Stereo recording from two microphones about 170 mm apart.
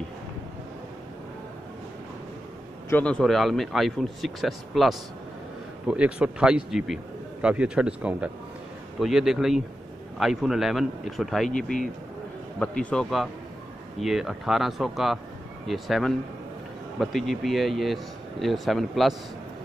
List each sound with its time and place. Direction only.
2.9 s a man's voice: 10° left (ahead or behind)
11.5 s speech: 50° left (ahead or behind)
12.5 s a man's voice: 5° left (ahead or behind)